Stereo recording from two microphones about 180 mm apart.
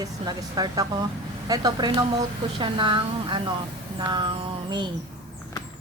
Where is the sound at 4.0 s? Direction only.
25° right (ahead or behind).